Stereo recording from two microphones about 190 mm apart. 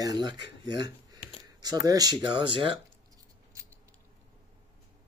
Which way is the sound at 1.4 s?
20° right (ahead or behind).